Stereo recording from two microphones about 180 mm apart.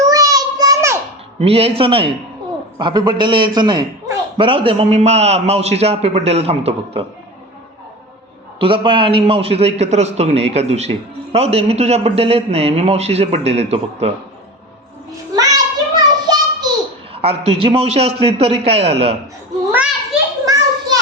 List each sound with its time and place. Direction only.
0.0 s child singing: 20° right (ahead or behind)
1.4 s a man's voice: 35° right (ahead or behind)
8.5 s a man's voice: 30° right (ahead or behind)
15.4 s child singing: 20° right (ahead or behind)
17.2 s a man's voice: 35° right (ahead or behind)
20.4 s children playing: 20° right (ahead or behind)